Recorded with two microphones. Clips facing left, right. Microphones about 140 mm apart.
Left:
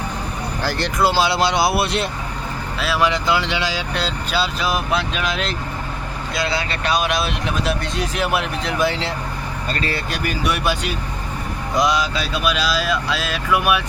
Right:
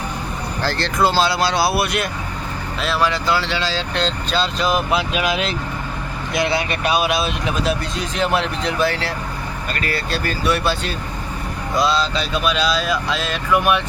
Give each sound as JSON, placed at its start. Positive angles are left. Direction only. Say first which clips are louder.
{"t": 0.6, "sound": "speech", "louder": "right 1 dB", "side_deg": 15}
{"t": 6.3, "sound": "speech", "louder": "right 3 dB", "side_deg": -20}
{"t": 8.9, "sound": "speech", "louder": "even", "side_deg": 20}
{"t": 10.1, "sound": "speech", "louder": "right 5 dB", "side_deg": 15}